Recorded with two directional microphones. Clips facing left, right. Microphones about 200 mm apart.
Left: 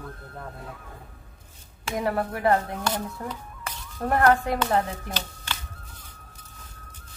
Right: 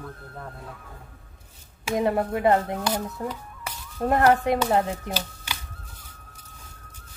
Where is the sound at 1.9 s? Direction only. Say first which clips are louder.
Right 4 dB; 20° right (ahead or behind).